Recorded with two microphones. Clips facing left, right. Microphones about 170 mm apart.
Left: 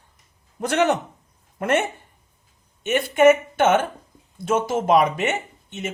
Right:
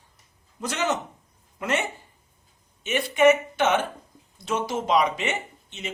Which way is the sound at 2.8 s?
50° left (ahead or behind).